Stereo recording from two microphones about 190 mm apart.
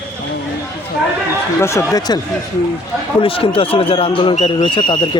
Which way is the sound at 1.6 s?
15° left (ahead or behind).